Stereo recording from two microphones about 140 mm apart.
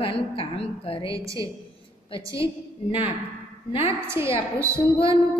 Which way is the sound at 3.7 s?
45° left (ahead or behind).